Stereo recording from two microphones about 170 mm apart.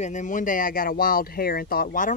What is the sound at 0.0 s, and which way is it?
Speech, 45° left (ahead or behind).